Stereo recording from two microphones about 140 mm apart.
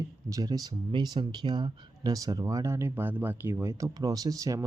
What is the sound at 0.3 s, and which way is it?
Speech, 25° right (ahead or behind).